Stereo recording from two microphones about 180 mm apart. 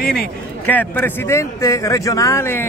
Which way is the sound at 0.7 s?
10° left (ahead or behind).